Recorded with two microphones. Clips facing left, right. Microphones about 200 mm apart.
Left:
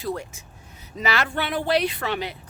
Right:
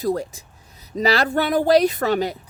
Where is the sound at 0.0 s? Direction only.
40° right (ahead or behind).